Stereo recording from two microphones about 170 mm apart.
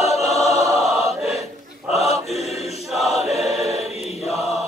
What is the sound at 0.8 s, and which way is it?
Choir, centre (ahead or behind).